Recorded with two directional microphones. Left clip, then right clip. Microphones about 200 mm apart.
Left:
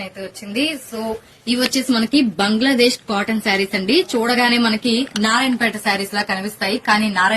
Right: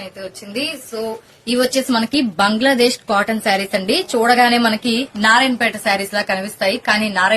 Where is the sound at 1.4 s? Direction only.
40° right (ahead or behind).